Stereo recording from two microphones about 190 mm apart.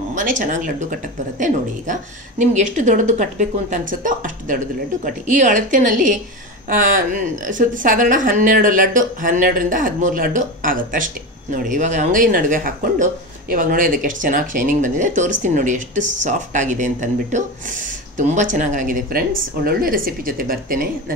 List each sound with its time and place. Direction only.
0.1 s a woman's voice: 40° right (ahead or behind)